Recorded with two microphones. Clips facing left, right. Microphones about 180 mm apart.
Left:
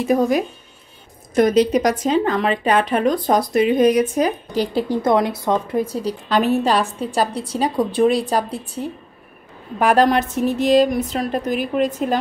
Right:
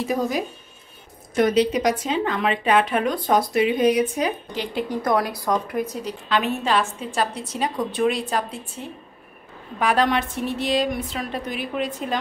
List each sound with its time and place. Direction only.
1.3 s speech: 45° left (ahead or behind)